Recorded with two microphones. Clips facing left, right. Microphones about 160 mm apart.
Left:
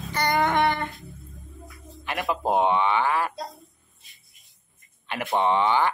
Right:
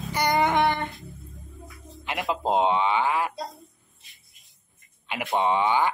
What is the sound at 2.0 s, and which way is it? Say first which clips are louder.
Speech: left 1 dB; 20° right (ahead or behind).